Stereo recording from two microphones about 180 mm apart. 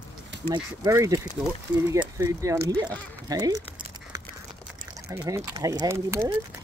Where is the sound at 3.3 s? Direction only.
20° right (ahead or behind).